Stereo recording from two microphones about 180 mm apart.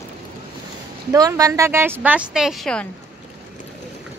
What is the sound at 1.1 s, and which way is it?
A woman's voice, 20° right (ahead or behind).